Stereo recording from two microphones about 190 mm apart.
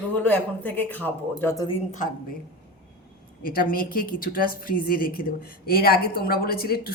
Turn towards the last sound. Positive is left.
turn(degrees=55)  # may be behind; listen again after turning